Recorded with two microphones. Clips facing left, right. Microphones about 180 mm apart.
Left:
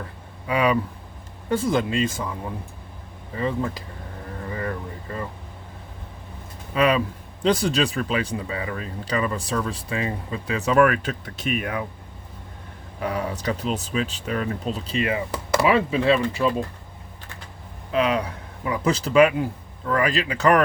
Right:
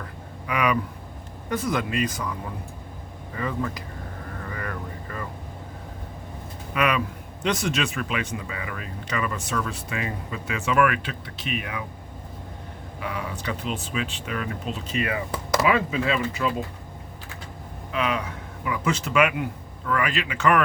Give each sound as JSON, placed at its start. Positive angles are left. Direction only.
{"t": 0.4, "sound": "speech", "side_deg": 30}
{"t": 3.3, "sound": "speech", "side_deg": 25}
{"t": 4.4, "sound": "vehicle", "side_deg": 25}
{"t": 6.7, "sound": "speech", "side_deg": 30}
{"t": 13.0, "sound": "speech", "side_deg": 40}
{"t": 17.9, "sound": "speech", "side_deg": 35}